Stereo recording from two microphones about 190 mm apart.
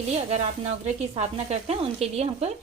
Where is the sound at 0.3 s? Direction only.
35° right (ahead or behind).